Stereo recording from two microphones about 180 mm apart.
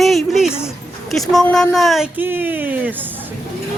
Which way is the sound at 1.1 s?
Centre (ahead or behind).